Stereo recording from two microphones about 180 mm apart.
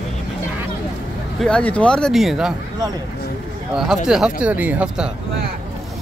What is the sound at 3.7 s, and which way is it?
Speech, centre (ahead or behind).